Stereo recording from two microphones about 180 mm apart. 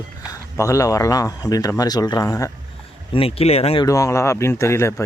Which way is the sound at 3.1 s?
30° left (ahead or behind).